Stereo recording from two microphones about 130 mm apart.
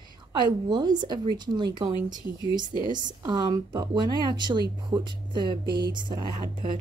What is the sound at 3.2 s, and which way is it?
A woman's voice, 30° right (ahead or behind).